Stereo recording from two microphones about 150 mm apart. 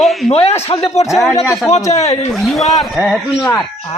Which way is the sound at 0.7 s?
40° left (ahead or behind).